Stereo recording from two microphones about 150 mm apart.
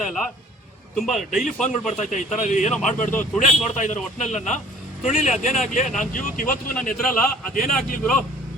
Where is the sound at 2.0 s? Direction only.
55° left (ahead or behind).